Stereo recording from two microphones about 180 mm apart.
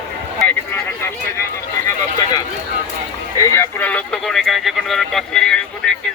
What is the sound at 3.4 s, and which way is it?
Speech, 15° left (ahead or behind).